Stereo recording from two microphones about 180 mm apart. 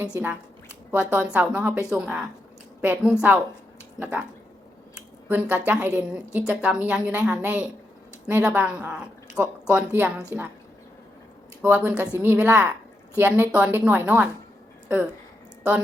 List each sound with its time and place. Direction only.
0.1 s a woman's voice: 15° right (ahead or behind)
5.3 s a woman's voice: 10° right (ahead or behind)
11.6 s a woman's voice: 10° right (ahead or behind)